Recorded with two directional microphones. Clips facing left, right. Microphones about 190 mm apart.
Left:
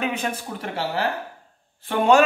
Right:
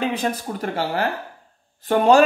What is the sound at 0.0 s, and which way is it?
Speech, 35° right (ahead or behind).